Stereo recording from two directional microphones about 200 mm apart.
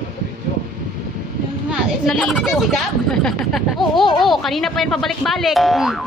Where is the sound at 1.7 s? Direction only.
Centre (ahead or behind).